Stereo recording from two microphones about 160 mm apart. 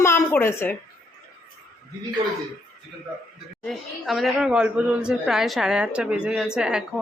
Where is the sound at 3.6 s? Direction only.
Centre (ahead or behind).